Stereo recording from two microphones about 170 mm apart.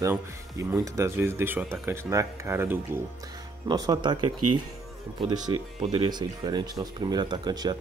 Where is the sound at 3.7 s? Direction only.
25° right (ahead or behind).